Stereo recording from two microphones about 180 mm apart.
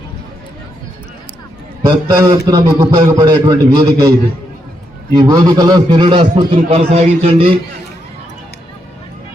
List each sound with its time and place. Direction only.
1.8 s a man's voice: 20° right (ahead or behind)
5.1 s a man's voice: 20° right (ahead or behind)